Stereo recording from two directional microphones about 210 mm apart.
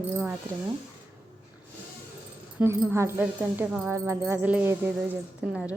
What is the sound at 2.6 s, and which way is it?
A woman's voice, 10° right (ahead or behind).